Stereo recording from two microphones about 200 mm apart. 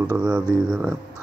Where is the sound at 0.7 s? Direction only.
5° right (ahead or behind).